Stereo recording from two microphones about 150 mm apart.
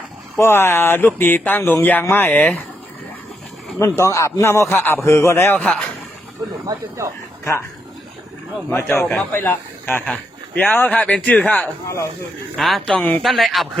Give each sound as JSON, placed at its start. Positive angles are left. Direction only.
{"t": 0.3, "sound": "speech", "side_deg": 15}
{"t": 3.8, "sound": "a man's voice", "side_deg": 20}
{"t": 6.7, "sound": "speech", "side_deg": -20}
{"t": 8.7, "sound": "speech", "side_deg": 15}
{"t": 13.2, "sound": "speech", "side_deg": 0}